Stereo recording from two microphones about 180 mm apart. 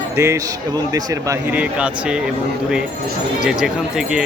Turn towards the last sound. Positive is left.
turn(degrees=-5)  # may be behind; listen again after turning